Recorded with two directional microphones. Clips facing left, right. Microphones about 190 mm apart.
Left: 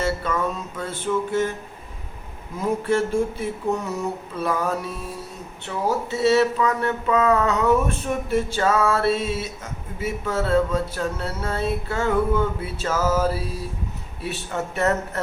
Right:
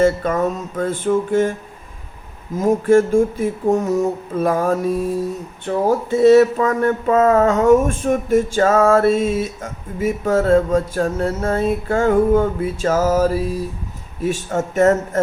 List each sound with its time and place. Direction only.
0.0 s speech: 45° right (ahead or behind)
2.6 s speech: 45° right (ahead or behind)